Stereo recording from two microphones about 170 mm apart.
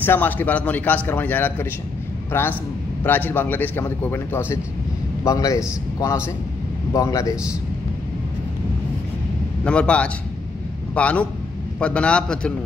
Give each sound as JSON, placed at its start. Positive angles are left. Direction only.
{"t": 0.0, "sound": "a man's voice", "side_deg": 10}
{"t": 9.7, "sound": "a man's voice", "side_deg": 5}